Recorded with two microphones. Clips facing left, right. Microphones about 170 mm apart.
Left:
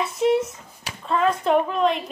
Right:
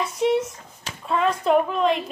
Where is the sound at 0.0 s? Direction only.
Centre (ahead or behind).